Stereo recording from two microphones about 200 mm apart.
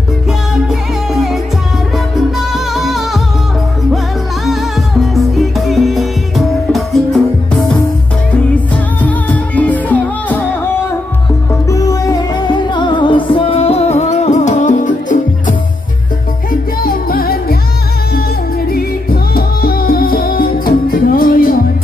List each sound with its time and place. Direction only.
1.1 s music: centre (ahead or behind)
2.5 s music: centre (ahead or behind)
5.7 s music: centre (ahead or behind)
9.0 s music: 5° left (ahead or behind)
11.7 s music: 15° left (ahead or behind); by 15.5 s 40° left (ahead or behind)
16.8 s music: 45° left (ahead or behind)
19.3 s music: 50° left (ahead or behind)